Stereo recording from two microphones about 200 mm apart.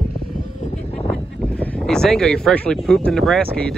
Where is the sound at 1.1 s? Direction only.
5° left (ahead or behind).